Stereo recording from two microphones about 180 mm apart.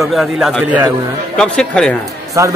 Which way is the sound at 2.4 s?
15° right (ahead or behind).